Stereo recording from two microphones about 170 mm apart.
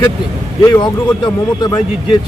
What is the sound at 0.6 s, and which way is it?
Speech, 25° left (ahead or behind).